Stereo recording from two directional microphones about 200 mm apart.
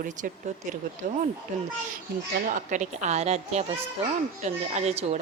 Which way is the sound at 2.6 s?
40° right (ahead or behind).